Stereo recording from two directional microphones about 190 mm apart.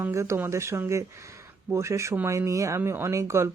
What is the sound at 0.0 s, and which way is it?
Speech, 15° right (ahead or behind).